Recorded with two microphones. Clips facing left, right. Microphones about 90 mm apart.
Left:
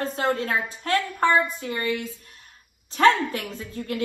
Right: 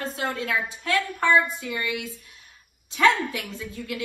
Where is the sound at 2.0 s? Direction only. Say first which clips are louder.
Left 2 dB; 45° left (ahead or behind).